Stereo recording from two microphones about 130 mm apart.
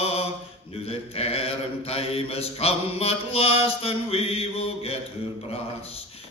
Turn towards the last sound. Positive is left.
turn(degrees=50)  # may be behind; listen again after turning